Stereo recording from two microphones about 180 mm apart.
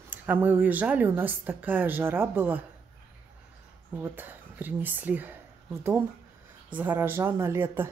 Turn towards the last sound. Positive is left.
turn(degrees=-10)  # may be behind; listen again after turning